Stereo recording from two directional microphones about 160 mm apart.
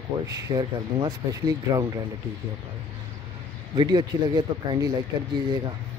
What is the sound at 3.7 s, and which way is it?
Speech, 25° right (ahead or behind).